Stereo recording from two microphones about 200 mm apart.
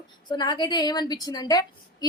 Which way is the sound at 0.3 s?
20° left (ahead or behind).